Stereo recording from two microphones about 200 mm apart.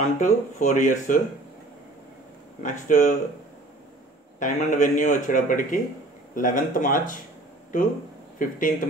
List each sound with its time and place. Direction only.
0.0 s speech: 40° left (ahead or behind)
2.6 s speech: 40° left (ahead or behind)
4.4 s speech: 40° left (ahead or behind)
8.4 s speech: 40° left (ahead or behind)